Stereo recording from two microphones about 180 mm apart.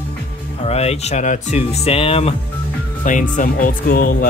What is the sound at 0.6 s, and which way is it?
Speech, 35° left (ahead or behind).